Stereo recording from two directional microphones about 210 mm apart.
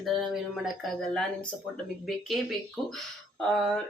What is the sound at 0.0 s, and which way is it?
Speech, centre (ahead or behind).